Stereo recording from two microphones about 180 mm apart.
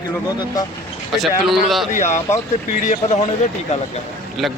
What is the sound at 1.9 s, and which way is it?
Speech, 40° left (ahead or behind).